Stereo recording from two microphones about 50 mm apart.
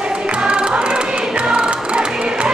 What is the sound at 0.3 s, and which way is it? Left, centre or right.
Music, centre.